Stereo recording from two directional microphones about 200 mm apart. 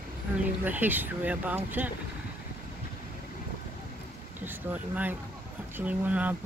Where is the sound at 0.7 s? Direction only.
10° right (ahead or behind).